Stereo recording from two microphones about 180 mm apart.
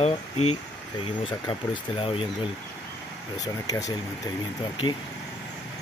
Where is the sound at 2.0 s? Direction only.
30° left (ahead or behind).